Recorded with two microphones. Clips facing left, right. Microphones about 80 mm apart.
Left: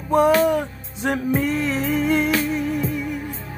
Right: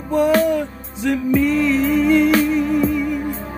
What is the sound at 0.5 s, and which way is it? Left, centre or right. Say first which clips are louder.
Music: right 1 dB; left.